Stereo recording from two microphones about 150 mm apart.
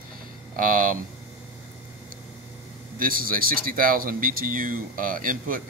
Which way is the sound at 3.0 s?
70° right (ahead or behind).